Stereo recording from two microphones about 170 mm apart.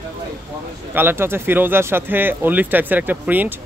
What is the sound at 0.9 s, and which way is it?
Speech, 15° right (ahead or behind).